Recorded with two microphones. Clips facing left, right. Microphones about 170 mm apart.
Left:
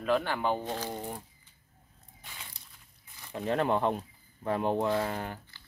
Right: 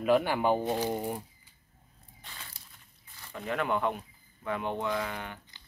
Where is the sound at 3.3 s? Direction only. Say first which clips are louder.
Left 3 dB; 30° left (ahead or behind).